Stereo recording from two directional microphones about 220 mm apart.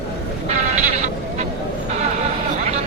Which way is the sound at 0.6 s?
35° right (ahead or behind).